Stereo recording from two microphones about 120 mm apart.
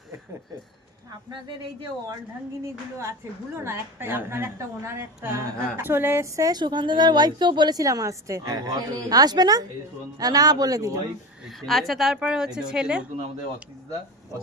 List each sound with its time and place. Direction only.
3.6 s a woman's voice: 20° right (ahead or behind)
11.4 s a woman's voice: centre (ahead or behind)